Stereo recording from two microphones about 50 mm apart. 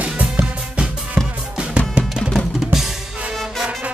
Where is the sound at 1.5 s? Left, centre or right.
Right.